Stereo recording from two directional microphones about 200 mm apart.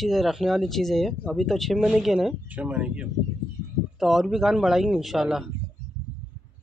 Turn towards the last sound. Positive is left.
turn(degrees=0)  # may be behind; listen again after turning